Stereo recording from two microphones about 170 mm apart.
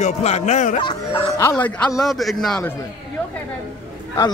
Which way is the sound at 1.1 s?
15° left (ahead or behind).